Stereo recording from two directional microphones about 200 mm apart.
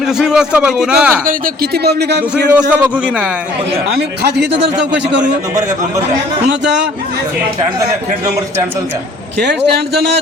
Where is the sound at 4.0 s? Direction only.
60° right (ahead or behind).